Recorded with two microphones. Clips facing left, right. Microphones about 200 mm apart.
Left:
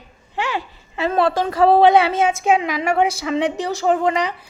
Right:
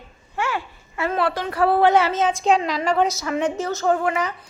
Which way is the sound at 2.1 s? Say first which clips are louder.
Left 2 dB; 10° left (ahead or behind).